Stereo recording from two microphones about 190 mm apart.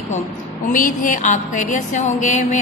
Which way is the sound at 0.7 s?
45° left (ahead or behind).